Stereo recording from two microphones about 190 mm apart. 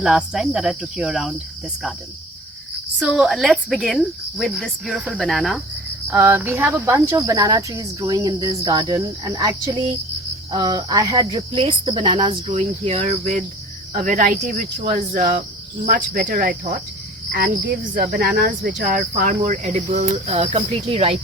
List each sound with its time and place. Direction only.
0.0 s speech: 5° right (ahead or behind)
3.0 s speech: 5° right (ahead or behind)
6.1 s speech: 10° right (ahead or behind); by 15.4 s 40° right (ahead or behind)
15.9 s cricket: 45° right (ahead or behind)
17.9 s speech: 60° right (ahead or behind); by 21.2 s 35° right (ahead or behind)